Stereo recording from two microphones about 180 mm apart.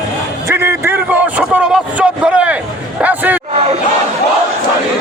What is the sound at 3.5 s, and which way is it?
Battle cry, 35° right (ahead or behind).